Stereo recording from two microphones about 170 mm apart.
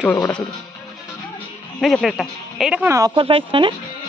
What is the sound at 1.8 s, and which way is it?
Speech, centre (ahead or behind).